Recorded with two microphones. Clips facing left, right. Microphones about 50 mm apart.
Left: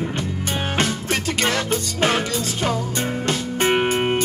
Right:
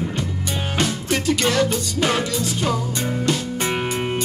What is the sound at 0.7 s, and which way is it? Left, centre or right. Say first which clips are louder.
Music: right 2 dB; left.